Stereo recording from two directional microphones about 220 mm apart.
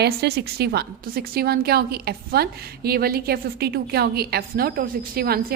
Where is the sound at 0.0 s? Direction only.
50° right (ahead or behind).